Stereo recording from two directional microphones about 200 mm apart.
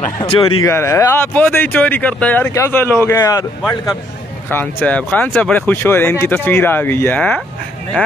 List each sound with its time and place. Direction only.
0.2 s a man's voice: 25° left (ahead or behind)
0.7 s speech: 15° left (ahead or behind)
4.7 s speech: 5° left (ahead or behind)